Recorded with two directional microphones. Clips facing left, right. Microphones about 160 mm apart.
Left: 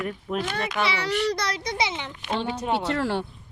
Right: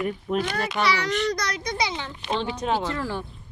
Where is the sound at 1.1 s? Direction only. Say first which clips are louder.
Even; 10° left (ahead or behind).